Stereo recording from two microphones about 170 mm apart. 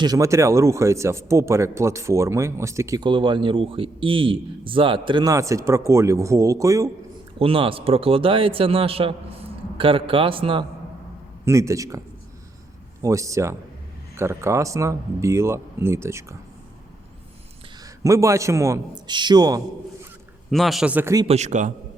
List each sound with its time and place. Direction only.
0.0 s speech: 20° right (ahead or behind)
7.3 s speech: 30° right (ahead or behind)
11.4 s speech: 15° right (ahead or behind)
13.0 s speech: 20° right (ahead or behind)
18.0 s speech: 20° right (ahead or behind)
20.5 s speech: centre (ahead or behind); by 21.2 s 15° right (ahead or behind)
21.2 s a man's voice: 40° right (ahead or behind)